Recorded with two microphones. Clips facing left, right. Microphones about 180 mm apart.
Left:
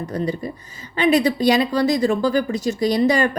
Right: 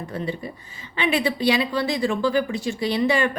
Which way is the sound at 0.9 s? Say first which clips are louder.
Left 6 dB; 40° left (ahead or behind).